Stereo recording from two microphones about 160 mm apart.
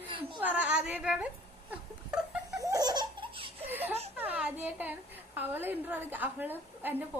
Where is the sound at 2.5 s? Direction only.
20° right (ahead or behind).